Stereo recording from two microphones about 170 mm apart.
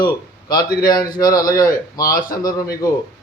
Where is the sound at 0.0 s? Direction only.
25° left (ahead or behind).